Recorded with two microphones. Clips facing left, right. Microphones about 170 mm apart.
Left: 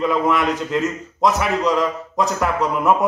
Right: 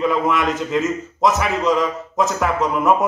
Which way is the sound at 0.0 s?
Centre (ahead or behind).